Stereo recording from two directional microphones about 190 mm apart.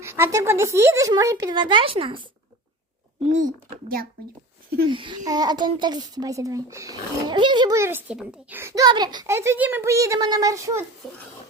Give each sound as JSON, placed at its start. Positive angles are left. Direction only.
{"t": 0.0, "sound": "a child's voice", "side_deg": -15}
{"t": 3.4, "sound": "speech", "side_deg": -50}
{"t": 4.9, "sound": "a child's voice", "side_deg": -25}
{"t": 11.0, "sound": "a sound", "side_deg": 0}